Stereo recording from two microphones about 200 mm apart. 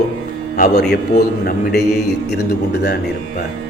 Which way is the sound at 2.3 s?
55° left (ahead or behind).